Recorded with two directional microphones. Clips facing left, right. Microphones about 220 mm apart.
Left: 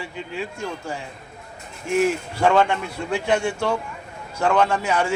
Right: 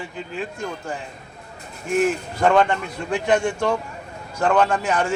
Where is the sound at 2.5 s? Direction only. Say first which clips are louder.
Right 1 dB; 5° left (ahead or behind).